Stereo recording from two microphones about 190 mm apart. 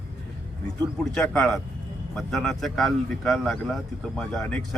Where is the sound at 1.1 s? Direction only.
5° left (ahead or behind).